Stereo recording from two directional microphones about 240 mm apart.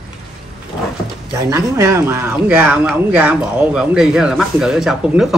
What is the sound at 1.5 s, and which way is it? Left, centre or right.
Speech, centre.